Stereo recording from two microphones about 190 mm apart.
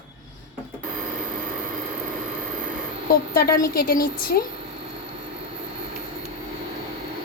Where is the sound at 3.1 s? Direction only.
50° left (ahead or behind).